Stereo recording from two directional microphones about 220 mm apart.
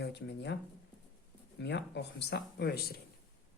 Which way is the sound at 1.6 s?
50° left (ahead or behind).